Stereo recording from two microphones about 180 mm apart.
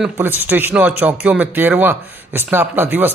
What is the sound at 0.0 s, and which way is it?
Speech, 10° right (ahead or behind).